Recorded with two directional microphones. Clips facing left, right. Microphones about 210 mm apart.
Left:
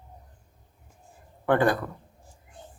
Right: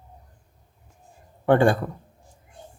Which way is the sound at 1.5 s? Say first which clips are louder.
Right 4 dB; 30° right (ahead or behind).